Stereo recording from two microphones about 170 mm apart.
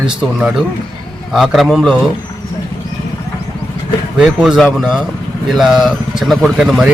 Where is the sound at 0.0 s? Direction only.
5° right (ahead or behind).